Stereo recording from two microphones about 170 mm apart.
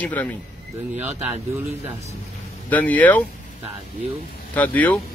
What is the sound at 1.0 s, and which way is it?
Speech, 10° right (ahead or behind).